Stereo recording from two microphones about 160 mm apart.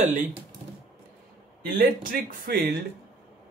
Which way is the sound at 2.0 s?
60° right (ahead or behind).